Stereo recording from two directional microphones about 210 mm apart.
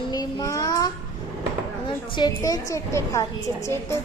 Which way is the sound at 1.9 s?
20° left (ahead or behind).